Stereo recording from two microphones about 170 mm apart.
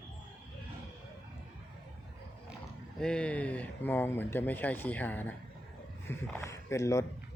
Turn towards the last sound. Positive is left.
turn(degrees=20)  # may be behind; listen again after turning